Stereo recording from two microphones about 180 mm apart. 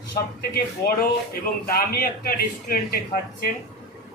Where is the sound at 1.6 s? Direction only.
55° left (ahead or behind).